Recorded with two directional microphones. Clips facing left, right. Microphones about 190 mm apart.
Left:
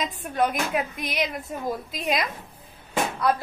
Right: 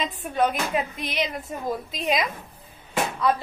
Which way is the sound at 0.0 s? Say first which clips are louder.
Right 1 dB; 5° left (ahead or behind).